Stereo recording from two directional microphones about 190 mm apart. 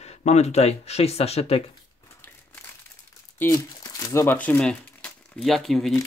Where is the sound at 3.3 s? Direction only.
15° left (ahead or behind).